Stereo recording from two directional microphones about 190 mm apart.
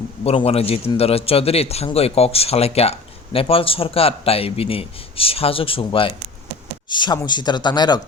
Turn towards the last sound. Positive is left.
turn(degrees=20)  # may be behind; listen again after turning